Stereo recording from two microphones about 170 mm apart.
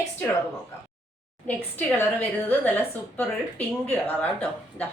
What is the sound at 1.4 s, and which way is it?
A woman's voice, 10° left (ahead or behind).